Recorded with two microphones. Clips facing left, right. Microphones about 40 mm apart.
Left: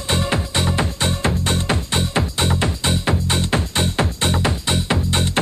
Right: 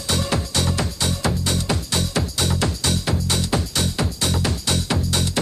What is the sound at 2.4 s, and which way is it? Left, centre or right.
Music, left.